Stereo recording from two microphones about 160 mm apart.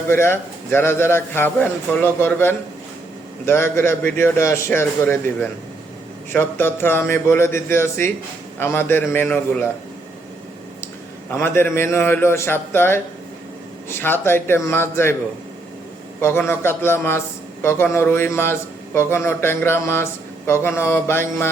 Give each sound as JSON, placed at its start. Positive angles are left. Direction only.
{"t": 0.1, "sound": "a man's voice", "side_deg": 15}
{"t": 11.3, "sound": "a man's voice", "side_deg": 15}
{"t": 16.2, "sound": "a man's voice", "side_deg": 15}